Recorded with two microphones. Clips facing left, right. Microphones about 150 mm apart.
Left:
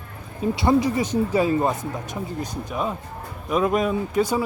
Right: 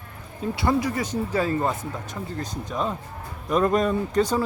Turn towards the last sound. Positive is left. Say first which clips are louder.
# even
turn(degrees=5)  # may be behind; listen again after turning